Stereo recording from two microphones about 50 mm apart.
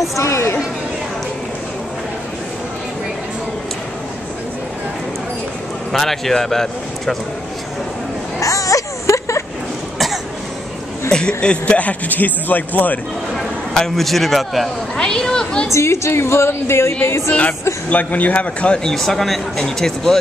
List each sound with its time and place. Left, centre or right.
0.2 s speech: left
5.9 s a man's voice: centre
8.4 s a sound: left
11.1 s speech: centre; by 13.0 s left
13.7 s a man's voice: centre
15.0 s speech: centre
15.7 s a woman's voice: left
17.3 s speech: left
18.9 s speech: centre